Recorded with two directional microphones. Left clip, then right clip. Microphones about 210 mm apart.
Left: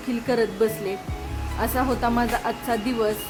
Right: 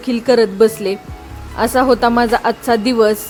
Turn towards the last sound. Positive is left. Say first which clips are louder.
# right 11 dB
turn(degrees=-35)  # may be behind; listen again after turning